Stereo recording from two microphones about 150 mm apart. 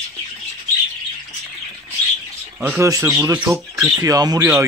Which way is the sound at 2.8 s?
20° right (ahead or behind).